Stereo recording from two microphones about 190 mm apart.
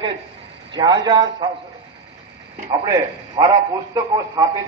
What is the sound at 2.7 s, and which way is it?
A man's voice, 20° right (ahead or behind).